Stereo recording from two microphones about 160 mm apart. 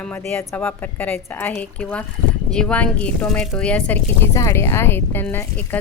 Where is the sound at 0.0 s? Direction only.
10° left (ahead or behind).